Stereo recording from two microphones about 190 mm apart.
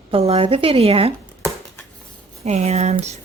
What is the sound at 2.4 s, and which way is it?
Speech, 35° right (ahead or behind).